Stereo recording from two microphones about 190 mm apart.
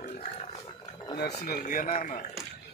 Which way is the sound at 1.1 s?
55° left (ahead or behind).